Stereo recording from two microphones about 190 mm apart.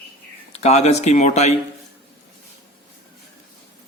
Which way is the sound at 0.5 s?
35° left (ahead or behind).